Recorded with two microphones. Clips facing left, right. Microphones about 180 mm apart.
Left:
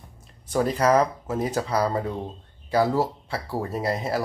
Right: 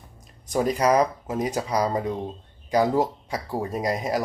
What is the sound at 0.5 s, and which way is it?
Speech, 15° right (ahead or behind).